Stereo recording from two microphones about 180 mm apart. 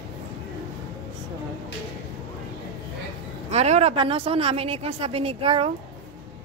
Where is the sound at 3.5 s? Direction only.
35° right (ahead or behind).